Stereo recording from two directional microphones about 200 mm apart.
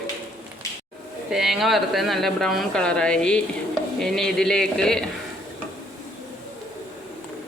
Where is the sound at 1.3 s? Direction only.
Centre (ahead or behind).